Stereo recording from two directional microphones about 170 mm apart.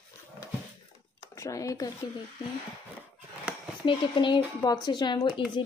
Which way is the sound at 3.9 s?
30° left (ahead or behind).